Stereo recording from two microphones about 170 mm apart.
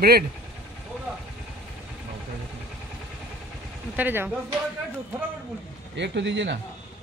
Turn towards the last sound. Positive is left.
turn(degrees=-90)